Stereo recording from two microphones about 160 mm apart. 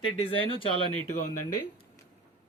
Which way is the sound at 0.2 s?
35° left (ahead or behind).